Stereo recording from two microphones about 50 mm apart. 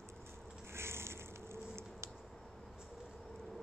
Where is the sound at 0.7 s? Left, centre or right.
Right.